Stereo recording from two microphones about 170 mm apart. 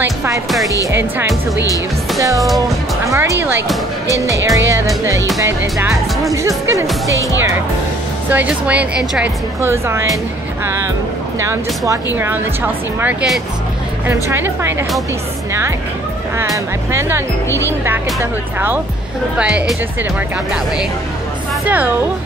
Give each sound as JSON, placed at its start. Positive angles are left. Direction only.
{"t": 0.0, "sound": "music", "side_deg": -15}
{"t": 0.9, "sound": "a woman's voice", "side_deg": -15}
{"t": 2.1, "sound": "music", "side_deg": -20}
{"t": 3.1, "sound": "a woman's voice", "side_deg": -20}
{"t": 6.3, "sound": "a woman's voice", "side_deg": -15}
{"t": 8.3, "sound": "a woman's voice", "side_deg": -10}
{"t": 17.5, "sound": "speech", "side_deg": 15}
{"t": 17.8, "sound": "a woman's voice", "side_deg": -10}
{"t": 21.6, "sound": "a woman's voice", "side_deg": -10}